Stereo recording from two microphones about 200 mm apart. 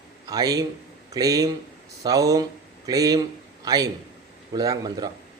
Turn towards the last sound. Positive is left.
turn(degrees=-20)  # may be behind; listen again after turning